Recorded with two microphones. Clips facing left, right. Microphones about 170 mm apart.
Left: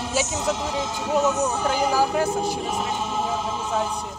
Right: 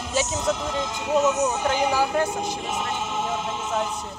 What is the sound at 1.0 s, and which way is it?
Speech, 30° left (ahead or behind).